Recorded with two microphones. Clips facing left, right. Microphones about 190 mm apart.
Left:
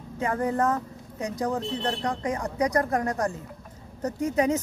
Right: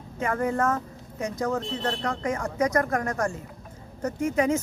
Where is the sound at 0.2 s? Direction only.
20° left (ahead or behind).